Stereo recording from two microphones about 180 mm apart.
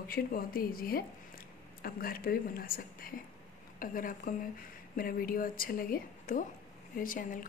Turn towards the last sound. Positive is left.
turn(degrees=50)  # may be behind; listen again after turning